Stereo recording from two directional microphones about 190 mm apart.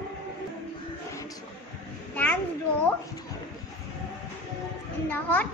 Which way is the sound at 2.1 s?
10° left (ahead or behind).